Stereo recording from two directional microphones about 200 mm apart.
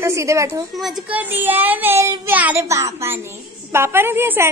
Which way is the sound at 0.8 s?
5° right (ahead or behind).